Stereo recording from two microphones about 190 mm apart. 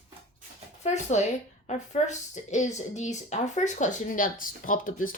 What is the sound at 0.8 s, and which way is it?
Speech, 35° left (ahead or behind).